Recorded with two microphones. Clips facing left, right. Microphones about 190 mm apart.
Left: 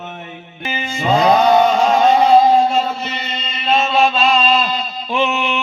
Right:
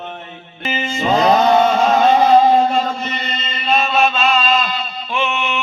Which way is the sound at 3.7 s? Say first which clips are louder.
Left 1 dB; 25° left (ahead or behind).